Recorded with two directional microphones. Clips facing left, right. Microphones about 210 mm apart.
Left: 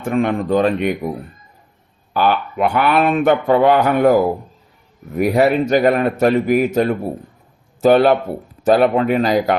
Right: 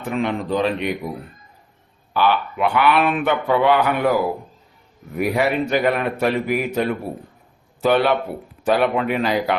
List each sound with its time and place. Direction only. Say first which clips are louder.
0.0 s speech: left 5 dB; 50° left (ahead or behind)
2.1 s speech: left 2 dB; 45° left (ahead or behind)